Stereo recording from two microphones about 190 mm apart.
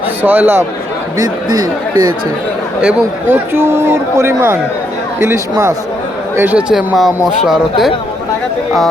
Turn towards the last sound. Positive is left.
turn(degrees=0)  # may be behind; listen again after turning